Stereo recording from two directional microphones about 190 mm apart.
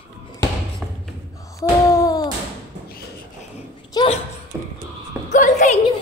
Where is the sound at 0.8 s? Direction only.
5° left (ahead or behind).